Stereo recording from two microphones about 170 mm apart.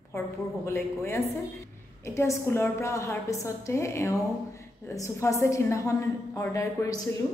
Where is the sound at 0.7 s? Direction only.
15° left (ahead or behind).